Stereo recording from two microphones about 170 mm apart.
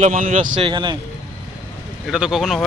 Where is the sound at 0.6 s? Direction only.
25° right (ahead or behind).